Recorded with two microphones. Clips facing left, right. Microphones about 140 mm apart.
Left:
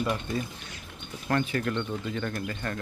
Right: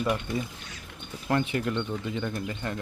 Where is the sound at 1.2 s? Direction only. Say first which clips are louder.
Right 1 dB; 20° right (ahead or behind).